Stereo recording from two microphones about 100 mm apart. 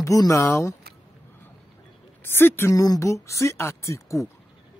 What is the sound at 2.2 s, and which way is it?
Speech, 20° left (ahead or behind).